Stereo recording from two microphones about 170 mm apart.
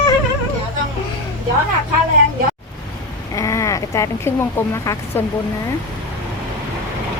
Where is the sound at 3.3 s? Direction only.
20° left (ahead or behind).